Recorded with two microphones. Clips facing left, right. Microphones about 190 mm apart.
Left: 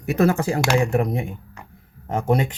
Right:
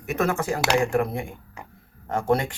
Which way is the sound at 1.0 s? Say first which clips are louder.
Left 2 dB; 20° left (ahead or behind).